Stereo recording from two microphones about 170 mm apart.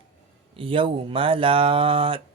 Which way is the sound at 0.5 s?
30° right (ahead or behind).